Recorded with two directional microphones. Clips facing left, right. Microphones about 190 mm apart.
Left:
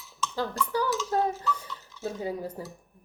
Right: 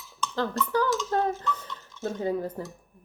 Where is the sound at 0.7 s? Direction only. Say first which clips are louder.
Right 1 dB; 5° left (ahead or behind).